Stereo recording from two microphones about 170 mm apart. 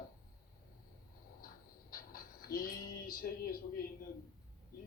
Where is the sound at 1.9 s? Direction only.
60° left (ahead or behind).